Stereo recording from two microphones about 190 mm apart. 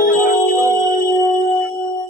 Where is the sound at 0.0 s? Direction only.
45° left (ahead or behind).